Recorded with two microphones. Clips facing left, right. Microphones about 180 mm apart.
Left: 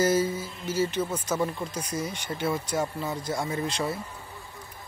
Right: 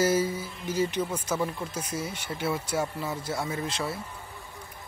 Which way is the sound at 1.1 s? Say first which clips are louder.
Left 1 dB; 10° left (ahead or behind).